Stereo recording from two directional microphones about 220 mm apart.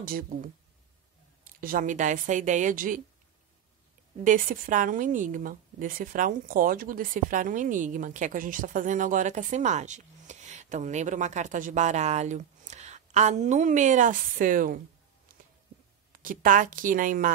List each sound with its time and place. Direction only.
0.0 s a woman's voice: 40° right (ahead or behind)
1.6 s a woman's voice: 40° right (ahead or behind)
4.2 s a woman's voice: 35° right (ahead or behind)
16.1 s a woman's voice: 40° right (ahead or behind)